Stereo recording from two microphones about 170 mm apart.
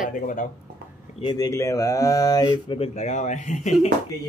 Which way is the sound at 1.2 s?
25° left (ahead or behind).